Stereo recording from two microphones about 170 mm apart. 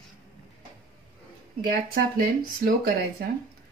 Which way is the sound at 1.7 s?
60° right (ahead or behind).